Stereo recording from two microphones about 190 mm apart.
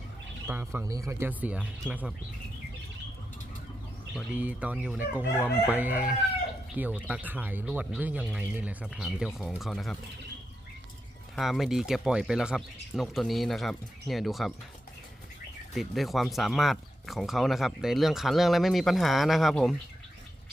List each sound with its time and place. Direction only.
0.4 s speech: 10° right (ahead or behind)
4.1 s speech: 5° right (ahead or behind)
11.3 s speech: centre (ahead or behind)
15.7 s speech: centre (ahead or behind)